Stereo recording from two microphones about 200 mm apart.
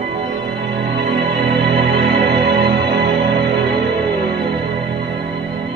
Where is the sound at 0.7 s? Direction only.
55° right (ahead or behind).